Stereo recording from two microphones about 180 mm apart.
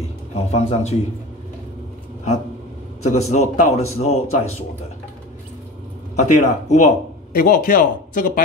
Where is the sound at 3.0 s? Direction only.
40° left (ahead or behind).